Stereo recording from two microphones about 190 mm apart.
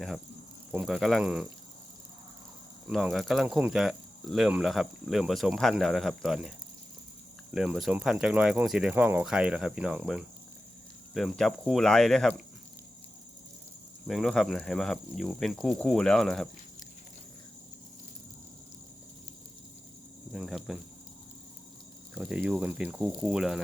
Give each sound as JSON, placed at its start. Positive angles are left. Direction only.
{"t": 0.7, "sound": "speech", "side_deg": -5}
{"t": 2.8, "sound": "speech", "side_deg": 0}
{"t": 7.5, "sound": "speech", "side_deg": 0}
{"t": 14.1, "sound": "speech", "side_deg": 0}
{"t": 20.3, "sound": "speech", "side_deg": -5}
{"t": 22.1, "sound": "speech", "side_deg": -5}